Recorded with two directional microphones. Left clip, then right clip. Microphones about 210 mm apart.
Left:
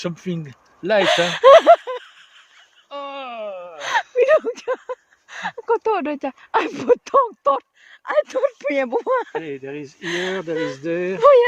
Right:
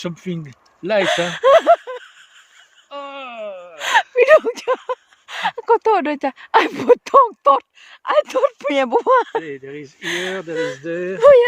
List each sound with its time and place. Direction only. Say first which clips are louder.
0.0 s speech: even; centre (ahead or behind)
2.9 s wail: even; 5° left (ahead or behind)
3.8 s speech: right 4 dB; 10° right (ahead or behind)
9.4 s speech: even; 35° left (ahead or behind)
10.0 s speech: right 1 dB; 10° right (ahead or behind)
10.3 s speech: right 1 dB; 50° left (ahead or behind)
11.2 s speech: right 3 dB; 10° right (ahead or behind)